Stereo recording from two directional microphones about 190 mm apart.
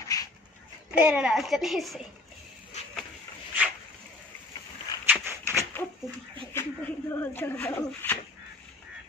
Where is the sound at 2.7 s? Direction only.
35° left (ahead or behind).